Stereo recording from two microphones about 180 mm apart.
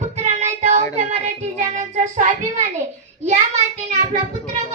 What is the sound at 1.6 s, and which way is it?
A child's voice, 45° right (ahead or behind).